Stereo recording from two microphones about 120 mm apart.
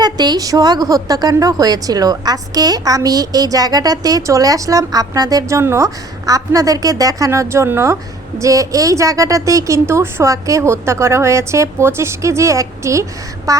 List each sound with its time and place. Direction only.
0.0 s a woman's voice: 35° right (ahead or behind)